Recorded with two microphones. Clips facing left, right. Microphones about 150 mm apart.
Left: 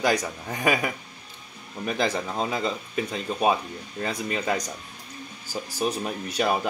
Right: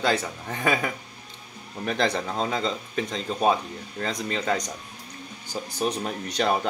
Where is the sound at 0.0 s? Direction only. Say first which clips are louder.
Left 1 dB; 15° left (ahead or behind).